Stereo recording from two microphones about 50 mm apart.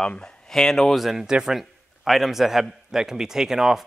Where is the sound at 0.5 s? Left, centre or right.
Centre.